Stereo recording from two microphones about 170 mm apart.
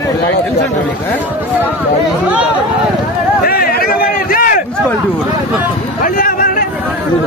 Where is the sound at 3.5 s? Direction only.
60° left (ahead or behind).